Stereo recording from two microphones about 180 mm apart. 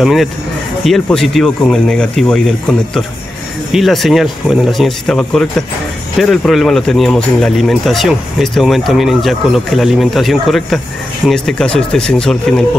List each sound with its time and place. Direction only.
0.0 s speech: centre (ahead or behind)
3.7 s speech: centre (ahead or behind)